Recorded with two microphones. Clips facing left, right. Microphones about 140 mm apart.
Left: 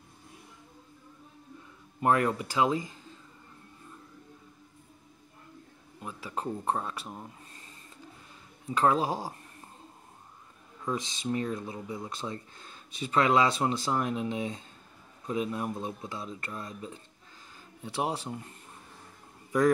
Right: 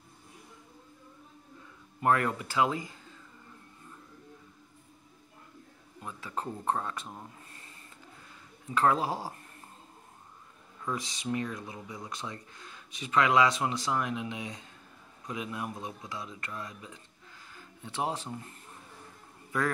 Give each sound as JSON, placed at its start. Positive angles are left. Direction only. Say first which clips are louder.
{"t": 2.0, "sound": "speech", "louder": "left 2 dB", "side_deg": 20}
{"t": 6.0, "sound": "speech", "louder": "left 2 dB", "side_deg": 15}
{"t": 8.7, "sound": "speech", "louder": "left 1 dB", "side_deg": 20}
{"t": 10.9, "sound": "speech", "louder": "left 2 dB", "side_deg": 25}
{"t": 17.6, "sound": "speech", "louder": "left 2 dB", "side_deg": 15}